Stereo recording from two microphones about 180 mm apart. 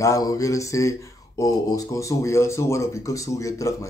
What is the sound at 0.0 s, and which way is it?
Speech, 20° left (ahead or behind).